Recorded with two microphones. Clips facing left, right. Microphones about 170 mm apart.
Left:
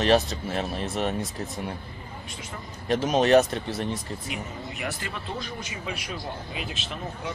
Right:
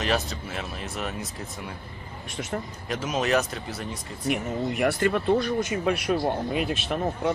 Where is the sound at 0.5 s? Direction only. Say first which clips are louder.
Left 5 dB; 35° left (ahead or behind).